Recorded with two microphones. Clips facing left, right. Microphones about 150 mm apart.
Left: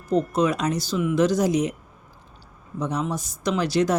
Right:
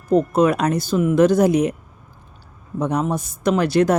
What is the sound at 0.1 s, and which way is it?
A woman's voice, 55° right (ahead or behind).